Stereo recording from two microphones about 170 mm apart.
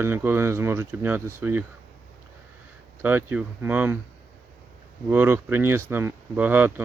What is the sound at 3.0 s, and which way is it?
Speech, 10° right (ahead or behind).